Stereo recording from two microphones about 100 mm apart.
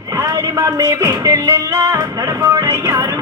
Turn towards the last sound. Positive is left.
turn(degrees=-35)  # may be behind; listen again after turning